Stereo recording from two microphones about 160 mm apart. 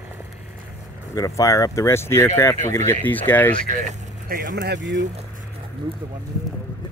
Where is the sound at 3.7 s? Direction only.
60° right (ahead or behind); by 4.8 s 90° right.